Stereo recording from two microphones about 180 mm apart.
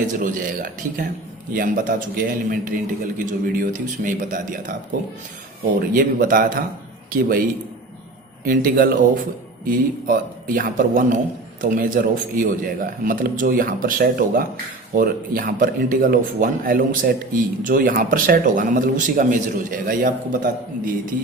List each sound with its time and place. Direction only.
0.1 s a man's voice: 45° right (ahead or behind)
5.9 s a man's voice: 50° right (ahead or behind)
8.4 s a man's voice: 50° right (ahead or behind)